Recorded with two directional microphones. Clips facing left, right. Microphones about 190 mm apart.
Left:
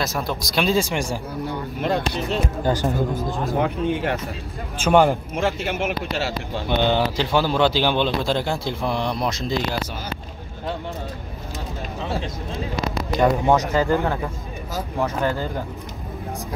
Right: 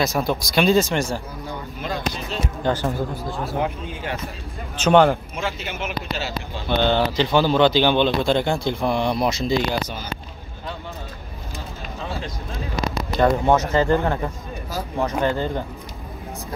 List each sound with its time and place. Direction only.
0.0 s a man's voice: centre (ahead or behind)
0.7 s speech: 10° left (ahead or behind)
1.8 s speech: 60° left (ahead or behind)
2.6 s speech: 15° left (ahead or behind)
3.6 s speech: 65° left (ahead or behind)
4.7 s speech: 10° left (ahead or behind)
5.3 s speech: 55° left (ahead or behind)
6.7 s a man's voice: 15° left (ahead or behind)
13.1 s speech: 15° left (ahead or behind)
15.0 s speech: 15° right (ahead or behind)